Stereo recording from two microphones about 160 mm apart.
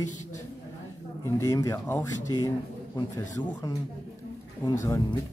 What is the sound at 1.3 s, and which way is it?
A man's voice, 20° left (ahead or behind).